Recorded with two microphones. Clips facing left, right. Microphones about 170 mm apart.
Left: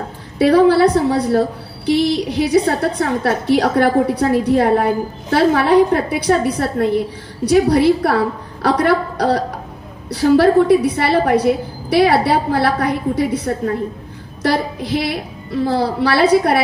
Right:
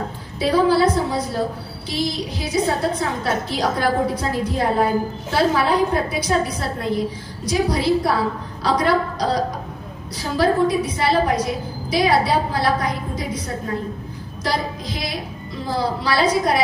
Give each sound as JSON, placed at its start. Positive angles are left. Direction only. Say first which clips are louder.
{"t": 0.4, "sound": "a woman's voice", "louder": "left 6 dB", "side_deg": 65}
{"t": 14.4, "sound": "a woman's voice", "louder": "left 6 dB", "side_deg": 60}